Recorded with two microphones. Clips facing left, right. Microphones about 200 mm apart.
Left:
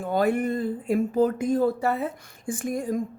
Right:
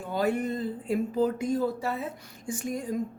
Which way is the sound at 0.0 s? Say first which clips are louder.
Left 4 dB; 55° left (ahead or behind).